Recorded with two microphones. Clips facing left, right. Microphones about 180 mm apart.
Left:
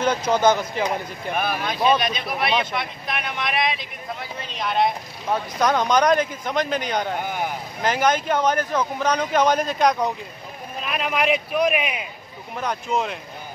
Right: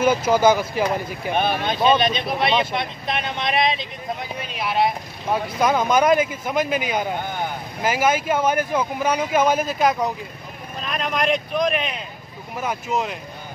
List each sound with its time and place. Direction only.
0.0 s speech: 5° right (ahead or behind)
1.3 s speech: 25° right (ahead or behind)
4.4 s speech: 10° right (ahead or behind); by 12.1 s 10° left (ahead or behind)
12.5 s speech: 5° right (ahead or behind)